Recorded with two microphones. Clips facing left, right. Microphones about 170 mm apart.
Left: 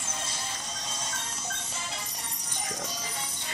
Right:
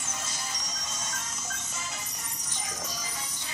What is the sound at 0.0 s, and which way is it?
Music, 30° left (ahead or behind).